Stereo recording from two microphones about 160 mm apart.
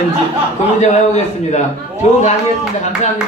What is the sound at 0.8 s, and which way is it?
Speech, 45° left (ahead or behind).